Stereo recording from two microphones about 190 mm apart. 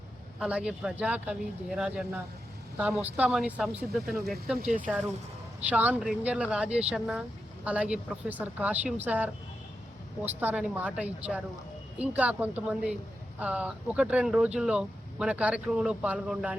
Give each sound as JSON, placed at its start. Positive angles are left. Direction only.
{"t": 0.3, "sound": "speech", "side_deg": -5}
{"t": 4.5, "sound": "speech", "side_deg": -45}
{"t": 5.6, "sound": "speech", "side_deg": -10}